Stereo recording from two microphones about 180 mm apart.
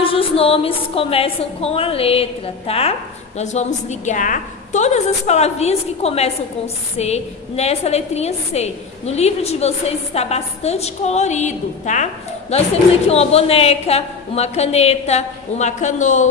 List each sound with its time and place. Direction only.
0.0 s a woman's voice: 30° left (ahead or behind)